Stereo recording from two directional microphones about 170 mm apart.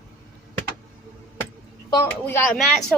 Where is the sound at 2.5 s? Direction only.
Centre (ahead or behind).